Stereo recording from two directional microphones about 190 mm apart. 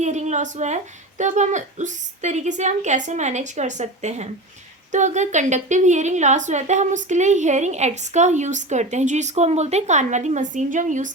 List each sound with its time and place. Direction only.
0.0 s a woman's voice: 40° right (ahead or behind)